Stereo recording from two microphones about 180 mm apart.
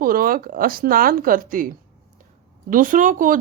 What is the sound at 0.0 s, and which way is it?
Speech, 55° right (ahead or behind).